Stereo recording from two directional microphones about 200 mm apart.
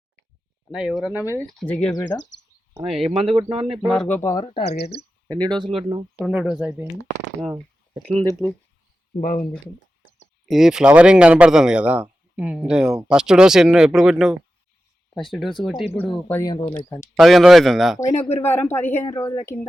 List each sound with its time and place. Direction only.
0.7 s speech: centre (ahead or behind)
3.3 s speech: 25° right (ahead or behind)
3.8 s speech: 5° left (ahead or behind)
4.4 s speech: 30° left (ahead or behind)
4.8 s speech: 55° left (ahead or behind)
5.4 s speech: 20° right (ahead or behind)
6.1 s speech: centre (ahead or behind)
7.9 s speech: 30° right (ahead or behind)
8.4 s speech: centre (ahead or behind)
10.5 s speech: centre (ahead or behind)
18.0 s speech: 30° left (ahead or behind)
18.3 s speech: 10° left (ahead or behind)